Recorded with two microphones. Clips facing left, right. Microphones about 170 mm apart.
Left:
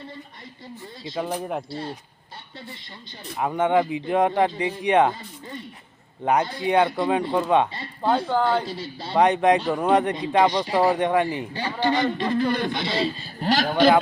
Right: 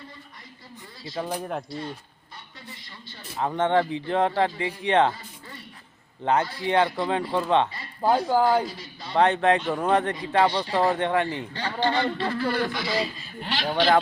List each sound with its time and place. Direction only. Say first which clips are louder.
1.0 s speech: left 3 dB; 20° left (ahead or behind)
1.3 s speech: left 1 dB; 10° left (ahead or behind)
1.7 s speech: left 2 dB; 30° left (ahead or behind)
3.3 s speech: left 2 dB; 10° left (ahead or behind)
8.1 s speech: right 1 dB; 5° right (ahead or behind)
8.6 s speech: left 4 dB; 30° left (ahead or behind)
9.1 s speech: left 2 dB; 15° left (ahead or behind); by 13.9 s 45° left (ahead or behind)